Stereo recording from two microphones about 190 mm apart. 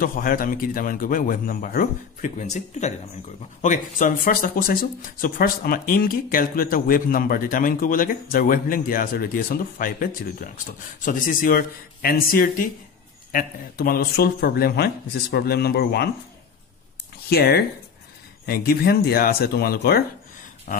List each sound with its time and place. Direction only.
0.0 s speech: 50° left (ahead or behind)
17.3 s speech: 55° left (ahead or behind)
20.7 s a sound: 45° left (ahead or behind)